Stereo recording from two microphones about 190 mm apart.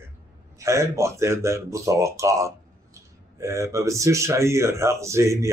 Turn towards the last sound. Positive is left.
turn(degrees=-15)  # may be behind; listen again after turning